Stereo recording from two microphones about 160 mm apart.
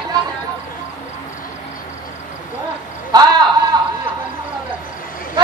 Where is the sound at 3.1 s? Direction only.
25° right (ahead or behind).